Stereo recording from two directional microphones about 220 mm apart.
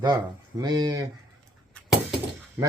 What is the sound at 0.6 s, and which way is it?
Speech, 20° right (ahead or behind).